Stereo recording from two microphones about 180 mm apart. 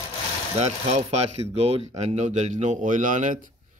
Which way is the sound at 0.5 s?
40° right (ahead or behind).